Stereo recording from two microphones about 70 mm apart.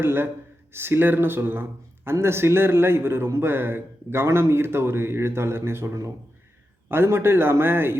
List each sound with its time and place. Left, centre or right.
0.0 s a man's voice: right